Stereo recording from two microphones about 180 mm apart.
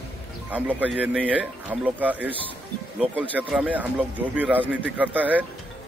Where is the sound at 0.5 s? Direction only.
10° right (ahead or behind).